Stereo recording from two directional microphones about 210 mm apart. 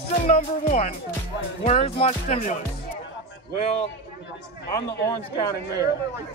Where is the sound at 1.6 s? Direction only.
30° left (ahead or behind).